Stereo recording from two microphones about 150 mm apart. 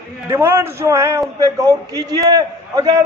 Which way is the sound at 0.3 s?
15° right (ahead or behind).